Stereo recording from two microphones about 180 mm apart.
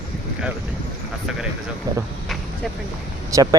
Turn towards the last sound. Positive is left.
turn(degrees=-20)  # may be behind; listen again after turning